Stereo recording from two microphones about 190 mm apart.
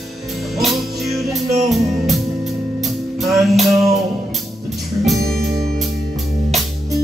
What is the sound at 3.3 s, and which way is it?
Music, centre (ahead or behind).